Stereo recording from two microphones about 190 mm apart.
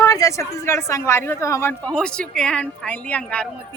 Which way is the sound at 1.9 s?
5° left (ahead or behind).